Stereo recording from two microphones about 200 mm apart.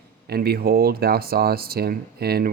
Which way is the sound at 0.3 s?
50° right (ahead or behind).